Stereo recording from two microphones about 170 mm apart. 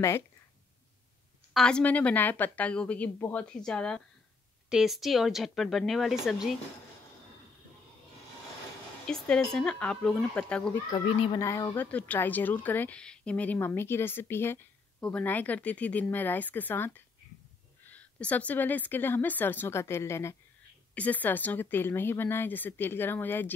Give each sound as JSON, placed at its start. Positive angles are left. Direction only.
{"t": 1.5, "sound": "speech", "side_deg": 5}
{"t": 9.0, "sound": "speech", "side_deg": 5}
{"t": 10.9, "sound": "a child's voice", "side_deg": 30}
{"t": 11.3, "sound": "speech", "side_deg": 20}